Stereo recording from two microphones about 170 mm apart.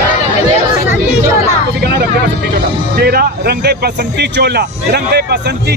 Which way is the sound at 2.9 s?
65° right (ahead or behind).